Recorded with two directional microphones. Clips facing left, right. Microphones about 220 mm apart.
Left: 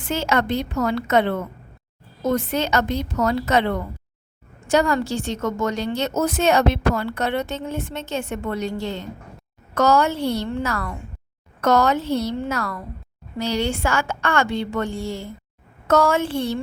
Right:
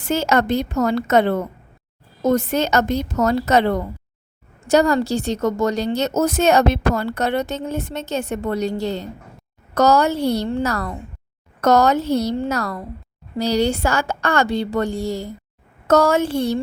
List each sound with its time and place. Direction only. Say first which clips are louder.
0.0 s a woman's voice: right 3 dB; 40° right (ahead or behind)